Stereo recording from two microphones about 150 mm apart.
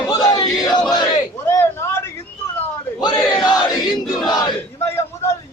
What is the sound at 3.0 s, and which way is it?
Battle cry, 30° left (ahead or behind).